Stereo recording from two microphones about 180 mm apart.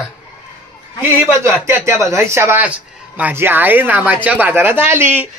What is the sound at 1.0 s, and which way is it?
A woman's voice, 10° right (ahead or behind).